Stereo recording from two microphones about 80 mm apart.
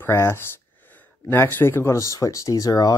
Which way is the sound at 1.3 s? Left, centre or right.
Left.